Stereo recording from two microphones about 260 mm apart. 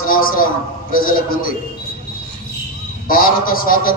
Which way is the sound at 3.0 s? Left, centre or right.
Left.